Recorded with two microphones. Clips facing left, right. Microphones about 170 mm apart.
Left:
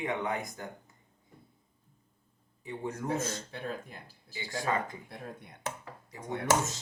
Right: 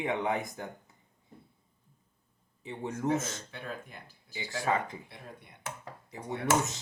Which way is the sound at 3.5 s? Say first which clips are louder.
Left 3 dB; 35° left (ahead or behind).